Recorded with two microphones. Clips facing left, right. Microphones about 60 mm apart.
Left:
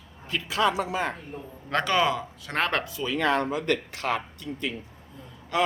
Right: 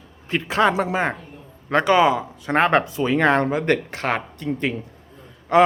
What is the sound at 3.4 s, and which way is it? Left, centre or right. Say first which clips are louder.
Speech: right 6 dB; right.